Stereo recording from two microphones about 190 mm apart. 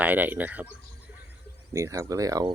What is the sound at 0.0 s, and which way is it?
Speech, 10° right (ahead or behind).